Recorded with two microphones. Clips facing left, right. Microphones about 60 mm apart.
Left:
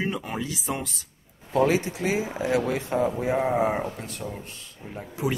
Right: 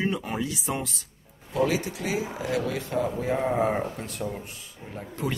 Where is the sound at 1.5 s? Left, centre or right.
Left.